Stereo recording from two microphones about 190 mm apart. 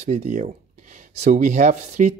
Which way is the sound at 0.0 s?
35° right (ahead or behind).